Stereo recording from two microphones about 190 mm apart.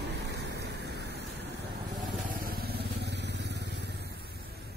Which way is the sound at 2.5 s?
55° right (ahead or behind).